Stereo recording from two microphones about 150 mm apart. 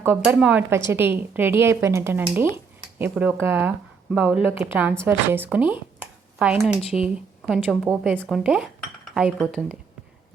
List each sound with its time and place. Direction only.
0.0 s a woman's voice: 15° right (ahead or behind)